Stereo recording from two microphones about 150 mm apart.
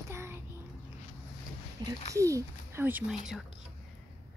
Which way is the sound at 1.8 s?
30° right (ahead or behind).